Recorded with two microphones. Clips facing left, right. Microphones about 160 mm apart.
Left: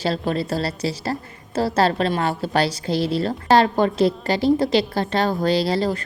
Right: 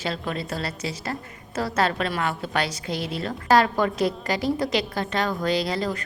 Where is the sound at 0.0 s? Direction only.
35° left (ahead or behind).